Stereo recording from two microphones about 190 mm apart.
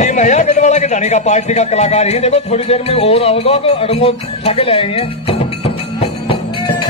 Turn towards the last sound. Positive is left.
turn(degrees=30)  # may be behind; listen again after turning